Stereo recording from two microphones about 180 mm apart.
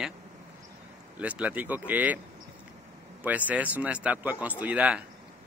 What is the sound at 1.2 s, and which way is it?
Speech, 10° right (ahead or behind).